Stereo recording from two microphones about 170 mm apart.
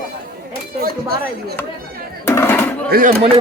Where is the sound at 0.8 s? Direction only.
65° right (ahead or behind).